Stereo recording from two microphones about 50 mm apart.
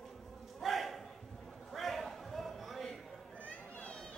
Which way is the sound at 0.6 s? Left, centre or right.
Centre.